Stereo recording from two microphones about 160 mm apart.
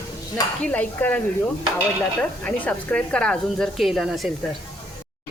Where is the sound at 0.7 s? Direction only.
10° left (ahead or behind).